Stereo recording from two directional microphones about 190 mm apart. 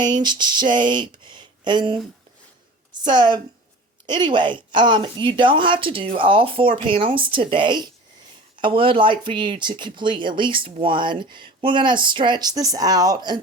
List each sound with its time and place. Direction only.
0.0 s a woman's voice: 25° right (ahead or behind)